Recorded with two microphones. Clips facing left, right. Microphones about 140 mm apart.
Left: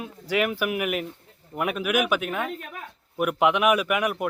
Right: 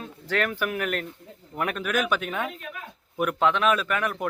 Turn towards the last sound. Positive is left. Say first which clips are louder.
# left 3 dB
turn(degrees=15)  # may be behind; listen again after turning